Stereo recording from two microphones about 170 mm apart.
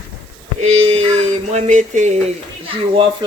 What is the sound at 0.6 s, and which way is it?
Music, 40° right (ahead or behind).